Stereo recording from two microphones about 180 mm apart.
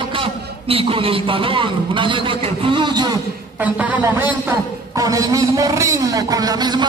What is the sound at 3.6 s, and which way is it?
A man's voice, 10° right (ahead or behind).